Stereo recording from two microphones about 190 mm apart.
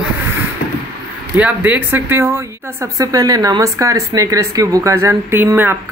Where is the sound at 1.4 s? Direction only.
10° right (ahead or behind).